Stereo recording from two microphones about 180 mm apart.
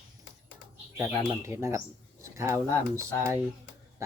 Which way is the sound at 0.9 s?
15° right (ahead or behind).